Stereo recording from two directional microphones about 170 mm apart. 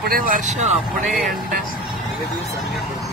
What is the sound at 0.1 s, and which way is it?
Speech, 55° right (ahead or behind).